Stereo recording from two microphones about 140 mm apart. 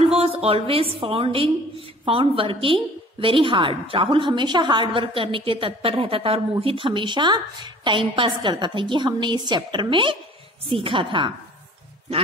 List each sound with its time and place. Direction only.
0.0 s a woman's voice: 45° right (ahead or behind)